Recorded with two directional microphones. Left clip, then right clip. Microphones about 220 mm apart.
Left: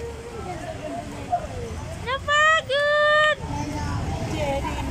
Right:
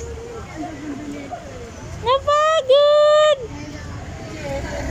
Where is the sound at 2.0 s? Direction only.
20° right (ahead or behind).